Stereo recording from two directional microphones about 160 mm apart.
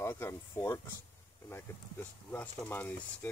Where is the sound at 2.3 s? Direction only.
10° left (ahead or behind).